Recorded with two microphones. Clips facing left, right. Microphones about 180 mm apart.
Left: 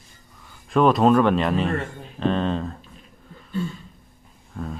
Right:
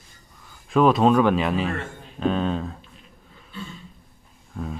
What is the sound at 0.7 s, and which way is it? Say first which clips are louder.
Speech: left 1 dB; centre (ahead or behind).